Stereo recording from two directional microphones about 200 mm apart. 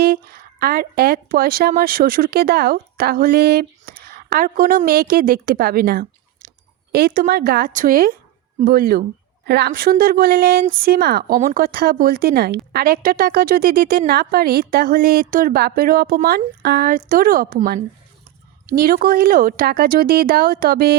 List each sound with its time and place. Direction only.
0.0 s speech: 50° right (ahead or behind)